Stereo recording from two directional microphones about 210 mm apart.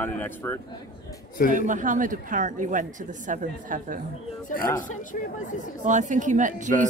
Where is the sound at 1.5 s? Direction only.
35° right (ahead or behind).